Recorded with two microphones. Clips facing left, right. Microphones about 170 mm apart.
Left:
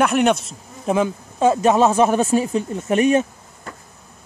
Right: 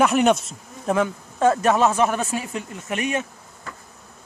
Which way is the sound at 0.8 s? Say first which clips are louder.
Left 2 dB; 20° left (ahead or behind).